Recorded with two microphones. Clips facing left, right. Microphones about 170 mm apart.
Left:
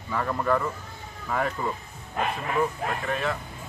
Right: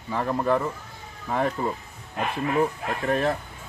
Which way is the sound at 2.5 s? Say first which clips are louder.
Right 1 dB; 40° right (ahead or behind).